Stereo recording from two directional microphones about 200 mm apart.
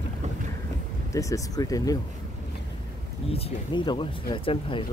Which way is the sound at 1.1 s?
15° left (ahead or behind).